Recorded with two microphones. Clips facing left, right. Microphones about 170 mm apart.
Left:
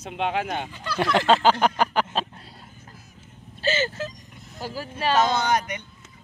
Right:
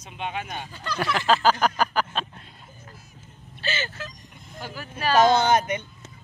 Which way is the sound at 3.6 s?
40° left (ahead or behind).